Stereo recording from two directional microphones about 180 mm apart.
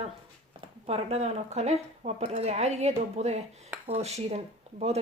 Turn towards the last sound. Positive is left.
turn(degrees=-35)  # may be behind; listen again after turning